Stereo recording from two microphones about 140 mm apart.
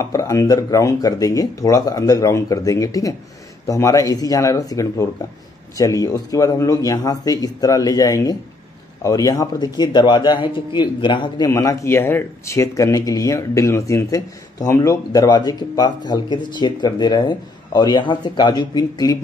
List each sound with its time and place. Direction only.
0.0 s speech: 20° left (ahead or behind)